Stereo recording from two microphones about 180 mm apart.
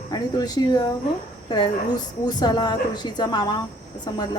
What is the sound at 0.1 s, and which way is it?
A woman's voice, 20° left (ahead or behind).